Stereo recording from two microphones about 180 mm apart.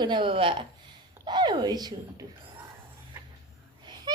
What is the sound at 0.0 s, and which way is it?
Speech, 25° right (ahead or behind).